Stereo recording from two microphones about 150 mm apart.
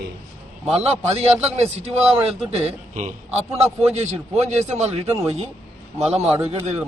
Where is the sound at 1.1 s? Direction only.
45° right (ahead or behind).